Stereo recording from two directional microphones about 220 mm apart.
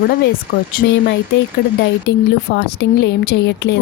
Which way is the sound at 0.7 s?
50° left (ahead or behind).